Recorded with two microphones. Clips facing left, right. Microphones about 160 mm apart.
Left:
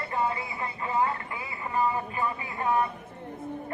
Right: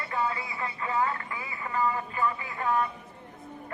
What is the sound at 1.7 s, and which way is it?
Speech, 25° left (ahead or behind).